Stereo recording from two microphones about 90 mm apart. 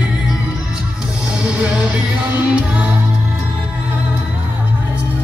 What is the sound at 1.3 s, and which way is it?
Music, 10° right (ahead or behind).